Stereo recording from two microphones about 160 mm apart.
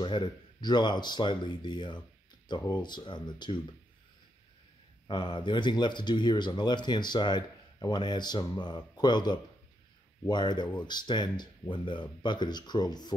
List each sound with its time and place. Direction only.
0.0 s speech: 30° left (ahead or behind)
5.0 s speech: 25° left (ahead or behind)